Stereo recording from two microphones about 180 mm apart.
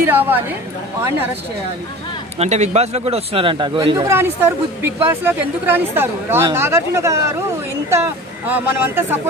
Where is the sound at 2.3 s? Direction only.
40° right (ahead or behind).